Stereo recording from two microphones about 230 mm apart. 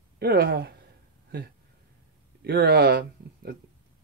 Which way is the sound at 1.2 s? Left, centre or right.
Right.